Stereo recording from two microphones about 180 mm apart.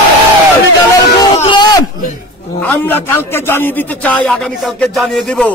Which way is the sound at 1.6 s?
20° left (ahead or behind).